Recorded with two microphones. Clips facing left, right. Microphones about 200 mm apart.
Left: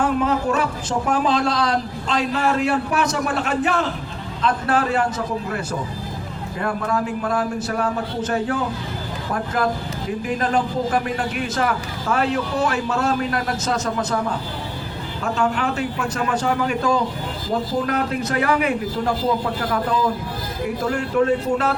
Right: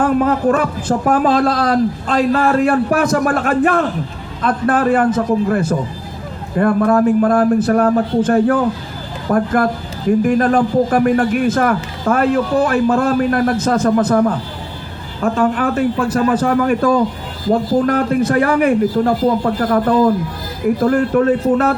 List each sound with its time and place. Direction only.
0.0 s a man's voice: 55° right (ahead or behind)
15.2 s a man's voice: 50° right (ahead or behind)